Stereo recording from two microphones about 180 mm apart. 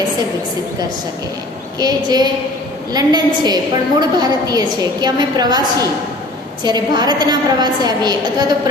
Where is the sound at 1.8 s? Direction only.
20° right (ahead or behind).